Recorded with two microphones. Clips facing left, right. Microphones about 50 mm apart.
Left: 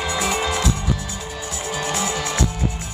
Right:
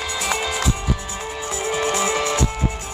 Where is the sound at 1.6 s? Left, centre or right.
Right.